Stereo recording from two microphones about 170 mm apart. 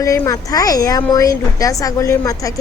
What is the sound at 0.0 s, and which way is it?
A woman's voice, 20° left (ahead or behind).